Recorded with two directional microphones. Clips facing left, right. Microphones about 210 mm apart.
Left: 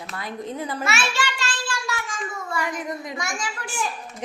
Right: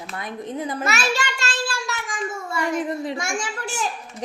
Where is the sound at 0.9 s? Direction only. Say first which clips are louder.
Right 2 dB; 40° right (ahead or behind).